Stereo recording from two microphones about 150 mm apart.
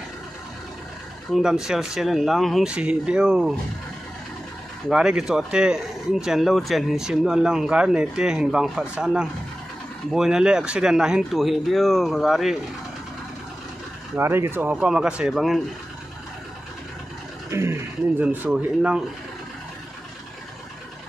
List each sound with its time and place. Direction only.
1.3 s speech: 5° right (ahead or behind)
4.8 s speech: 5° right (ahead or behind)
14.1 s speech: 15° right (ahead or behind)
17.5 s speech: 15° right (ahead or behind)